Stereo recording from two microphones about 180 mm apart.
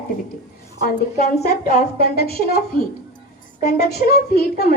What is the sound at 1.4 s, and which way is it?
A woman's voice, 60° left (ahead or behind).